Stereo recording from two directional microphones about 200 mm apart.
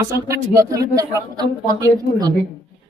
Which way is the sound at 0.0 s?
15° right (ahead or behind).